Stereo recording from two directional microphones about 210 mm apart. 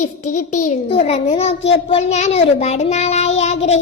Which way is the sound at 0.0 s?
35° left (ahead or behind).